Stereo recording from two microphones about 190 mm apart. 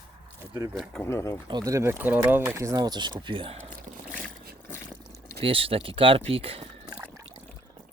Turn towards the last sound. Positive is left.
turn(degrees=-30)  # may be behind; listen again after turning